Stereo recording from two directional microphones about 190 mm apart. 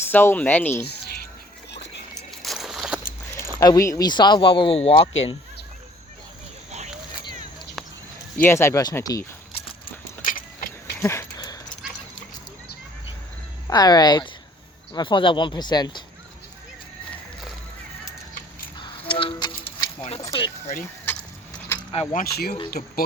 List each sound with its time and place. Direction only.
0.1 s speech: 10° left (ahead or behind)
2.3 s vehicle: centre (ahead or behind)
3.6 s speech: 20° left (ahead or behind)
8.4 s speech: 15° left (ahead or behind)
10.2 s keys jangling: 45° left (ahead or behind)
11.0 s a sound: 15° left (ahead or behind)
13.7 s speech: 20° left (ahead or behind)
18.8 s a sound: 25° left (ahead or behind)
21.1 s vehicle: 10° left (ahead or behind)
22.1 s speech: 50° left (ahead or behind)
22.8 s speech: 35° left (ahead or behind)